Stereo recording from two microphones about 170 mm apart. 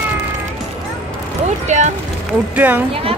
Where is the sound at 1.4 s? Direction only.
45° right (ahead or behind).